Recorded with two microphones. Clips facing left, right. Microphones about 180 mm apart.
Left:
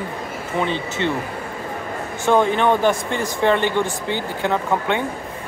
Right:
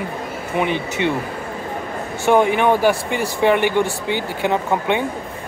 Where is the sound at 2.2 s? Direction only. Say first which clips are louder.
Right 2 dB; 15° right (ahead or behind).